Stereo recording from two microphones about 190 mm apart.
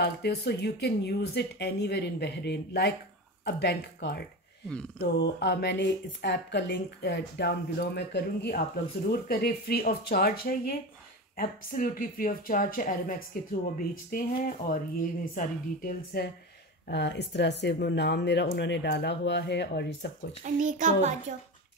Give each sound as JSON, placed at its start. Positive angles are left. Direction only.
{"t": 0.0, "sound": "speech", "side_deg": 60}
{"t": 16.8, "sound": "speech", "side_deg": 65}
{"t": 20.4, "sound": "child singing", "side_deg": -40}